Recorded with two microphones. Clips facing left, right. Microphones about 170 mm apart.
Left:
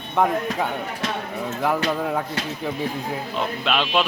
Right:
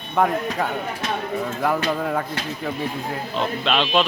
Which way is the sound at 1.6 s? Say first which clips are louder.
Left 1 dB; 5° left (ahead or behind).